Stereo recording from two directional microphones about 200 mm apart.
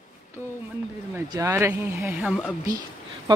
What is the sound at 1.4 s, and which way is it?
Speech, 10° right (ahead or behind).